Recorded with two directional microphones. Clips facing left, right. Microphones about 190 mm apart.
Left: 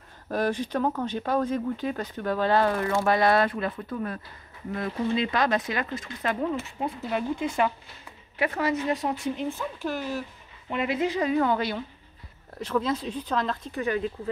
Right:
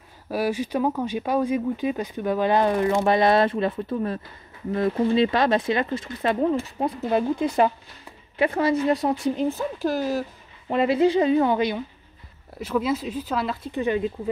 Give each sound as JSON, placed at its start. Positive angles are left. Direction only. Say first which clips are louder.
{"t": 0.3, "sound": "a woman's voice", "louder": "right 2 dB", "side_deg": -10}
{"t": 13.7, "sound": "a woman's voice", "louder": "right 5 dB", "side_deg": -20}